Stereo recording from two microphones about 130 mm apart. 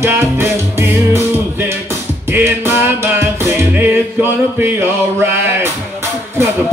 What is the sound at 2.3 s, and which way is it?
Music, 15° right (ahead or behind).